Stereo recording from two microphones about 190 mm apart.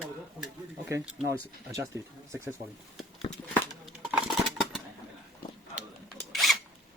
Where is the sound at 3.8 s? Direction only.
Centre (ahead or behind).